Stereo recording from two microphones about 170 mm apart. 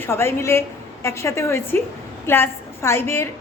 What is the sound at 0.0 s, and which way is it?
A woman's voice, 15° left (ahead or behind).